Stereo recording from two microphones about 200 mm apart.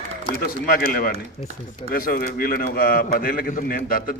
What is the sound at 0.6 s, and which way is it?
A man's voice, 50° left (ahead or behind).